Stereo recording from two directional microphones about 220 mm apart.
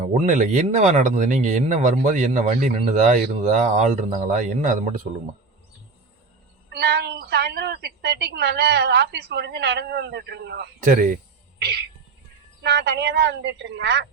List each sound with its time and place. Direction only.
0.0 s speech: 30° right (ahead or behind)
6.7 s a woman's voice: 50° right (ahead or behind)
12.6 s a woman's voice: 50° right (ahead or behind)